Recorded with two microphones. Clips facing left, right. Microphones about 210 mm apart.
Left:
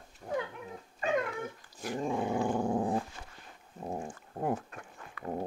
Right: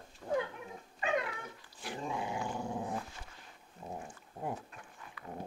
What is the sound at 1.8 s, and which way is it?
Dog, 45° left (ahead or behind).